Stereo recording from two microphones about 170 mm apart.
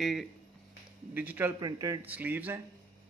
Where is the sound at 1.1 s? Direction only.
10° right (ahead or behind).